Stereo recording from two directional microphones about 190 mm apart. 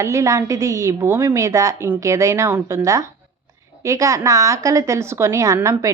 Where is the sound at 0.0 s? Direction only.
15° right (ahead or behind).